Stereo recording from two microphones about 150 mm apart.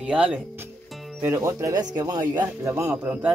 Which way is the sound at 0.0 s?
5° right (ahead or behind).